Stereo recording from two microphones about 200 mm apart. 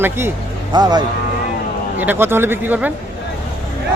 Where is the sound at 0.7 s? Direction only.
20° right (ahead or behind).